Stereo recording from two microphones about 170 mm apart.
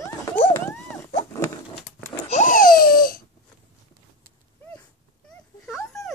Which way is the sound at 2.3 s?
50° left (ahead or behind).